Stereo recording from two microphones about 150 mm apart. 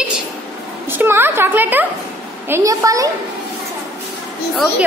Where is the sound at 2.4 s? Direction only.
20° right (ahead or behind).